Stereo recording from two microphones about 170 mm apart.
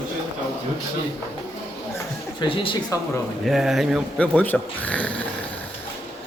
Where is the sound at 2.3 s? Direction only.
30° left (ahead or behind).